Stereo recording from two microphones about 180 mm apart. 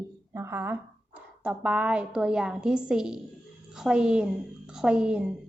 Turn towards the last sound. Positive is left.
turn(degrees=-5)  # may be behind; listen again after turning